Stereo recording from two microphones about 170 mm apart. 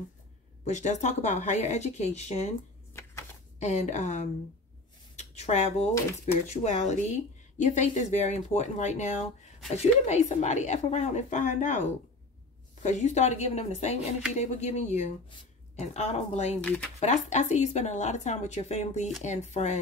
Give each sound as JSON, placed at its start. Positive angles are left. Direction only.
{"t": 0.7, "sound": "a woman's voice", "side_deg": 45}
{"t": 2.9, "sound": "chopping", "side_deg": 15}
{"t": 3.5, "sound": "a woman's voice", "side_deg": 45}
{"t": 12.8, "sound": "a woman's voice", "side_deg": 45}